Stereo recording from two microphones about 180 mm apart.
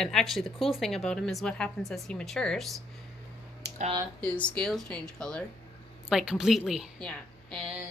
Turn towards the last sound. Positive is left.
turn(degrees=0)  # may be behind; listen again after turning